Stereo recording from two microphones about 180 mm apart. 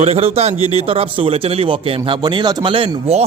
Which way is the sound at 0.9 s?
30° right (ahead or behind).